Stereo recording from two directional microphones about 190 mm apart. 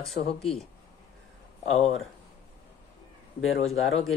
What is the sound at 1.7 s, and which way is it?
Speech, 35° left (ahead or behind).